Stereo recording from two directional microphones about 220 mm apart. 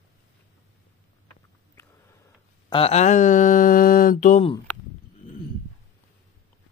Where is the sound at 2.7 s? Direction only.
30° left (ahead or behind).